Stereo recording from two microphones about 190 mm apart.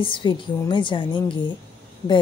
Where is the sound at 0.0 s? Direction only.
25° left (ahead or behind).